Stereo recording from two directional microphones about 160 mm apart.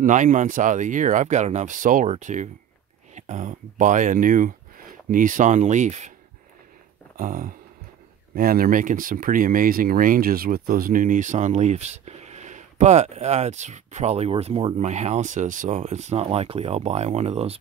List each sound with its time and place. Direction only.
0.0 s speech: 50° right (ahead or behind)
7.2 s a sound: 55° right (ahead or behind)
8.4 s speech: 65° right (ahead or behind); by 17.6 s 40° right (ahead or behind)